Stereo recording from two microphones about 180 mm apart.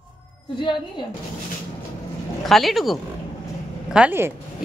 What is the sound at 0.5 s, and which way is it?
Speech, 25° left (ahead or behind).